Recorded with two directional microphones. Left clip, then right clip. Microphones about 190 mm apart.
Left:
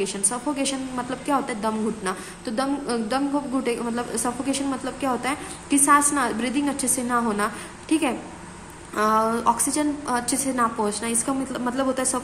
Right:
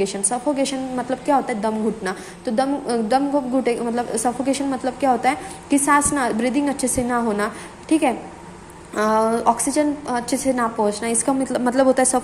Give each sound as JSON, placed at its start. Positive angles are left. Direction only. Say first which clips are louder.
{"t": 0.0, "sound": "a woman's voice", "louder": "right 5 dB", "side_deg": -15}